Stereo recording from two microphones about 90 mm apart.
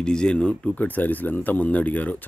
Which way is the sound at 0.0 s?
10° left (ahead or behind).